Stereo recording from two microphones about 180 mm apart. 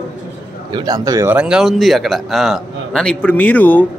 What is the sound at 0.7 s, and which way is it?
Speech, 20° right (ahead or behind).